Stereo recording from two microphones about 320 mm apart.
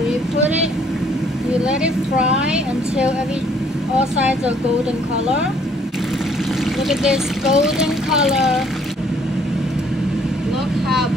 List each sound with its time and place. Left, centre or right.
1.6 s speech: centre
6.9 s speech: centre